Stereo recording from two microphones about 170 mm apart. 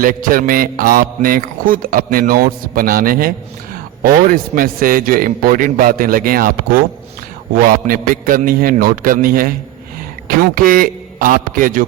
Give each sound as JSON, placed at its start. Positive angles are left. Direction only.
{"t": 0.0, "sound": "speech", "side_deg": -55}